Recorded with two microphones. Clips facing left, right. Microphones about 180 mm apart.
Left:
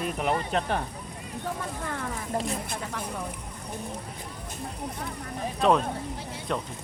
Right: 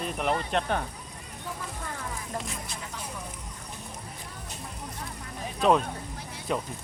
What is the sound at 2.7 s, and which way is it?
Speech, 55° left (ahead or behind).